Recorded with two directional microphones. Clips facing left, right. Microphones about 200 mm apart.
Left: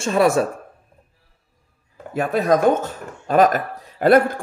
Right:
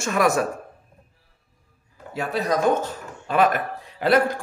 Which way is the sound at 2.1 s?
50° left (ahead or behind).